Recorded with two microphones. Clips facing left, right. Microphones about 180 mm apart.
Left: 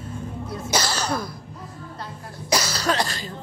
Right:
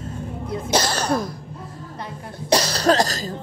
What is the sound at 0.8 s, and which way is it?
Throat clearing, 50° right (ahead or behind).